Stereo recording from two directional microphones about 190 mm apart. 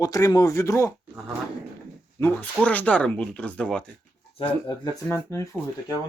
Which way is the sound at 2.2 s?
10° left (ahead or behind).